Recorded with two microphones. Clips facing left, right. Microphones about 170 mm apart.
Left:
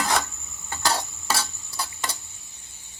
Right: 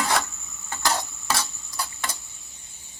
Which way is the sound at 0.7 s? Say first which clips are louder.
Even; 10° left (ahead or behind).